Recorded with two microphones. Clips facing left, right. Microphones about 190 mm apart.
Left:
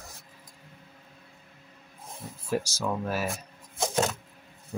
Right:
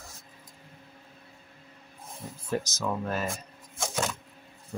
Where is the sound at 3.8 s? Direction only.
40° left (ahead or behind).